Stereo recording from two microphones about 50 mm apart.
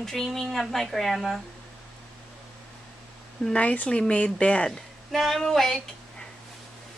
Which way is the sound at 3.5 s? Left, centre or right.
Left.